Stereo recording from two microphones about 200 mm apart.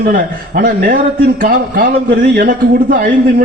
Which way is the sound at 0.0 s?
45° right (ahead or behind).